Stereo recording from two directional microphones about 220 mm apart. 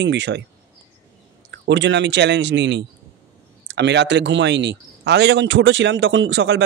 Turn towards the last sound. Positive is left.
turn(degrees=-55)  # may be behind; listen again after turning